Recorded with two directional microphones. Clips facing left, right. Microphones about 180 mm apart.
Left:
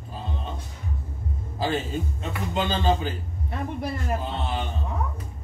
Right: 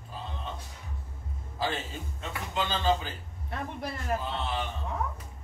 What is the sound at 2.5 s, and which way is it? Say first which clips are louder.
Speech: left 4 dB; 20° left (ahead or behind).